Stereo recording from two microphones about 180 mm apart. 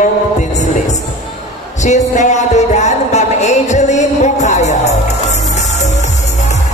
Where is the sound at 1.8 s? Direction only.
40° left (ahead or behind).